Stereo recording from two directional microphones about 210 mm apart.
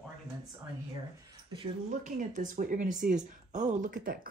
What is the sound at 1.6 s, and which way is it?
Speech, 35° right (ahead or behind).